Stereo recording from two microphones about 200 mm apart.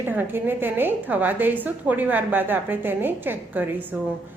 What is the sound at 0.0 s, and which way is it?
A woman's voice, 10° right (ahead or behind).